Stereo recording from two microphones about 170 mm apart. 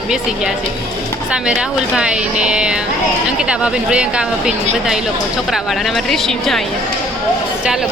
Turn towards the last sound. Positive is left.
turn(degrees=0)  # may be behind; listen again after turning